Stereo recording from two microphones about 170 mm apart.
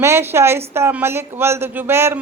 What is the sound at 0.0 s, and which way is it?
Speech, 15° right (ahead or behind).